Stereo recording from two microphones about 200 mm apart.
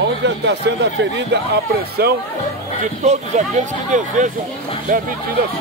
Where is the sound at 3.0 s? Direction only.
35° right (ahead or behind).